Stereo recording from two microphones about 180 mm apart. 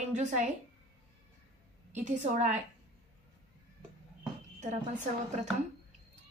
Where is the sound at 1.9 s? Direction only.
40° right (ahead or behind).